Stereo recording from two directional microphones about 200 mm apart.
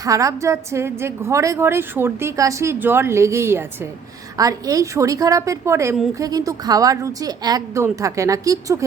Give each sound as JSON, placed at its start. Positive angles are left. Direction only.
{"t": 0.0, "sound": "a woman's voice", "side_deg": -15}